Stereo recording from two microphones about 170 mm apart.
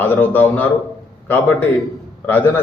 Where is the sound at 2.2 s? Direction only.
10° left (ahead or behind).